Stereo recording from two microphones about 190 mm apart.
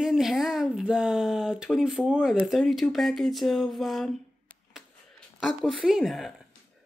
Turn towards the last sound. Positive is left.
turn(degrees=0)  # may be behind; listen again after turning